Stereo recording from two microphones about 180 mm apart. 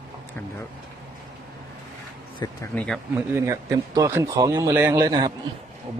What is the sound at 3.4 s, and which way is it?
Speech, 20° right (ahead or behind).